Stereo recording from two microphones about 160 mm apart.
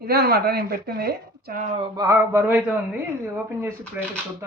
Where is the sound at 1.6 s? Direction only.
45° right (ahead or behind).